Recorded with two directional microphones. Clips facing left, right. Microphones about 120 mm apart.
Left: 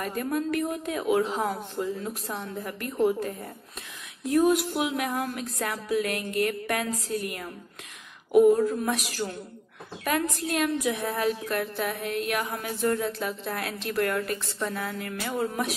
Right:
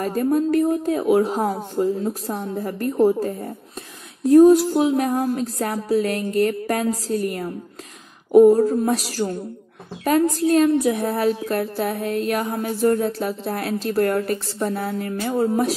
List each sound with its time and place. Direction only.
0.0 s speech: 35° right (ahead or behind)